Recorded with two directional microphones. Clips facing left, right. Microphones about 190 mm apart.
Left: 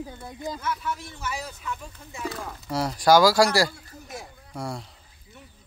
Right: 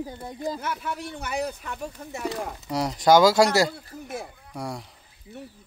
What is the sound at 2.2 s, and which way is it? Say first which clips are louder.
Speech: right 2 dB; 15° right (ahead or behind).